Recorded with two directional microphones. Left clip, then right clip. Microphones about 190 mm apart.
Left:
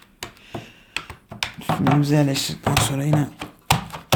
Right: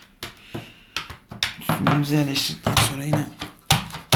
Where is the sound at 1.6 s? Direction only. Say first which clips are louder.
Left 3 dB; 60° left (ahead or behind).